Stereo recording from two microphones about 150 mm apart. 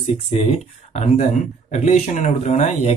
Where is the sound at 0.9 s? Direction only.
50° left (ahead or behind).